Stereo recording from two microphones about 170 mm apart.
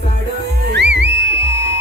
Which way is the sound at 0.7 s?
90° right.